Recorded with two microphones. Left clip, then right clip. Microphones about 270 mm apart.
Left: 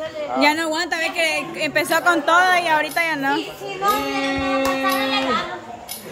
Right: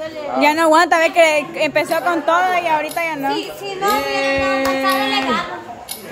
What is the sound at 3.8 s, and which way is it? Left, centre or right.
Child singing, right.